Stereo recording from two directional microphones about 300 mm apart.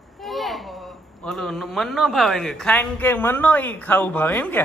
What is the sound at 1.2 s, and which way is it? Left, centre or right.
Speech, centre.